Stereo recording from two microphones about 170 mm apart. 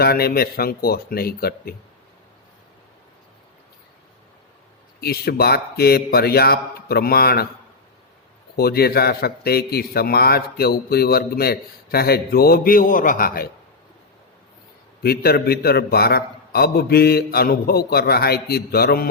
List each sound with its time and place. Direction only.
0.0 s a man's voice: 65° left (ahead or behind)
4.9 s a man's voice: 65° left (ahead or behind)
8.5 s a man's voice: 65° left (ahead or behind)
15.0 s a man's voice: 65° left (ahead or behind)